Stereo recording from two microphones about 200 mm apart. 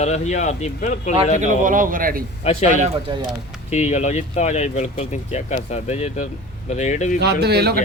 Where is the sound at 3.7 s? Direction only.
35° left (ahead or behind).